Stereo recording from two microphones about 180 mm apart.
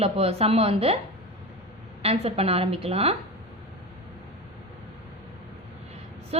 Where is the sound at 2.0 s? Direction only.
35° right (ahead or behind).